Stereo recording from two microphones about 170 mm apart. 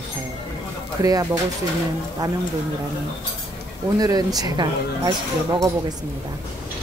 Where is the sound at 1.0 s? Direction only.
20° right (ahead or behind).